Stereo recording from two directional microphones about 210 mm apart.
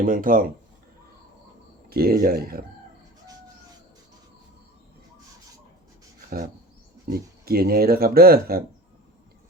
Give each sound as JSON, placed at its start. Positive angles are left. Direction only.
{"t": 0.0, "sound": "speech", "side_deg": -40}
{"t": 1.9, "sound": "speech", "side_deg": -45}
{"t": 7.1, "sound": "speech", "side_deg": -45}